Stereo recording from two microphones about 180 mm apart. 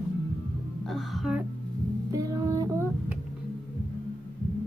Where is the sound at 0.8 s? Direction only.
Centre (ahead or behind).